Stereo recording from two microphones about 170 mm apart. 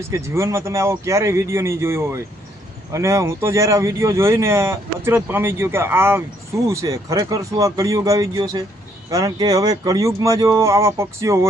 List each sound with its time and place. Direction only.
0.1 s speech: 15° right (ahead or behind)